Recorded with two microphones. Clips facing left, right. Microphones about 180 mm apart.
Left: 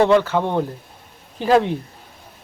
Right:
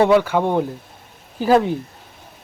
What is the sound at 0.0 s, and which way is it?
Speech, 10° right (ahead or behind).